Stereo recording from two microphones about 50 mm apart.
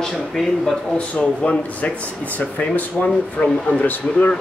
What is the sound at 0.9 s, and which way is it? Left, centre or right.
Speech, left.